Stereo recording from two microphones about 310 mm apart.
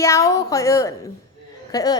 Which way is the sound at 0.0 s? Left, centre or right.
Centre.